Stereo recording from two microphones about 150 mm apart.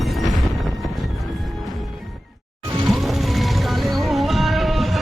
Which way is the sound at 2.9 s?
Centre (ahead or behind).